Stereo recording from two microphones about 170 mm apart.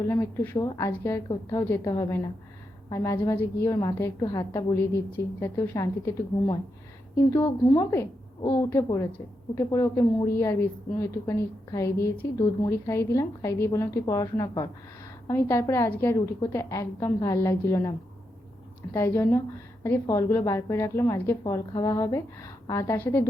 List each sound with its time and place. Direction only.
0.1 s a woman's voice: 20° left (ahead or behind)
18.9 s a woman's voice: 15° left (ahead or behind)